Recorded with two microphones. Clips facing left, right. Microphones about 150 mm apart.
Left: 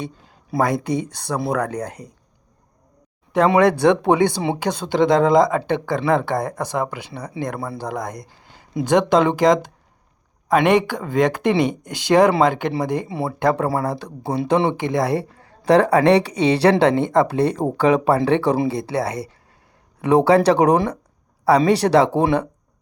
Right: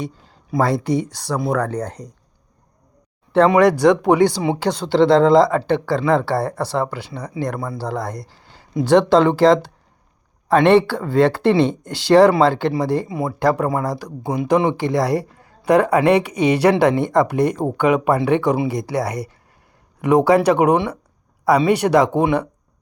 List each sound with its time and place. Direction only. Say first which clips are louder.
0.6 s speech: right 2 dB; 20° left (ahead or behind)
3.5 s speech: left 1 dB; 25° left (ahead or behind)